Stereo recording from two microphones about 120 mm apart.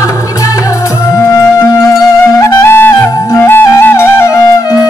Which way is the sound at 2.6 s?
20° left (ahead or behind).